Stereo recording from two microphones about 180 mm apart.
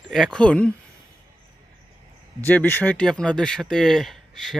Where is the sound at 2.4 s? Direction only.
10° left (ahead or behind).